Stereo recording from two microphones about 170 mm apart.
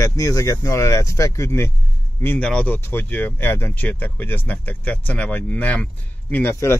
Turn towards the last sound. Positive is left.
turn(degrees=15)  # may be behind; listen again after turning